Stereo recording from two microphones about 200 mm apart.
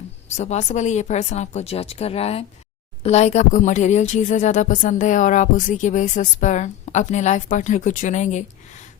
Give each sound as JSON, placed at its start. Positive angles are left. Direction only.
{"t": 0.3, "sound": "speech", "side_deg": 35}